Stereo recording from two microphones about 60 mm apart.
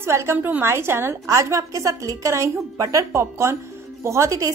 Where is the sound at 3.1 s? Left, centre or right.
Right.